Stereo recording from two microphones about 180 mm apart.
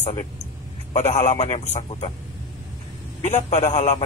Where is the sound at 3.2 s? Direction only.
40° left (ahead or behind).